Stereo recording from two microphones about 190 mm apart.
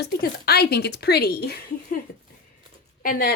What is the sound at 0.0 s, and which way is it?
Speech, 55° left (ahead or behind).